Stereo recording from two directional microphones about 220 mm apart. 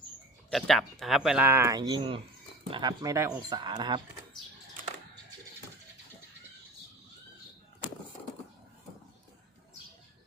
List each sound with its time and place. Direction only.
0.5 s speech: centre (ahead or behind); by 4.0 s 20° right (ahead or behind)